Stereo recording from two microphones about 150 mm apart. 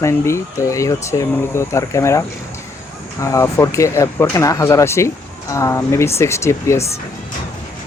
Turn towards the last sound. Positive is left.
turn(degrees=20)  # may be behind; listen again after turning